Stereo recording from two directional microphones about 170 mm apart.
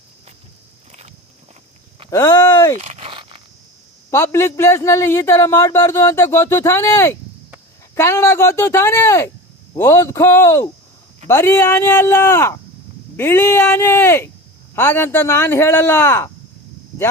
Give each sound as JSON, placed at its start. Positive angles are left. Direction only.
{"t": 2.0, "sound": "speech", "side_deg": 20}
{"t": 2.8, "sound": "zipper", "side_deg": -40}
{"t": 4.1, "sound": "a man's voice", "side_deg": 15}